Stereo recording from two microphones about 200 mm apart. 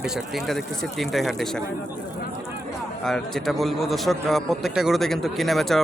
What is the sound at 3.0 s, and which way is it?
A man's voice, centre (ahead or behind).